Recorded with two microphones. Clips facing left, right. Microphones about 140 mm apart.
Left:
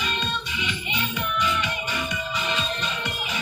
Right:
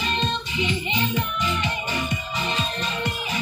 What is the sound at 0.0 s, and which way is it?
Music, 30° right (ahead or behind).